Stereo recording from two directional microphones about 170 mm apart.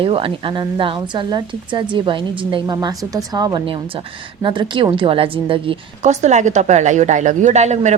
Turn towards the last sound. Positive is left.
turn(degrees=-40)  # may be behind; listen again after turning